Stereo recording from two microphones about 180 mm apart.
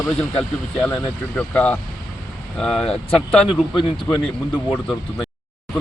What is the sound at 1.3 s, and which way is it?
Speech, 5° left (ahead or behind).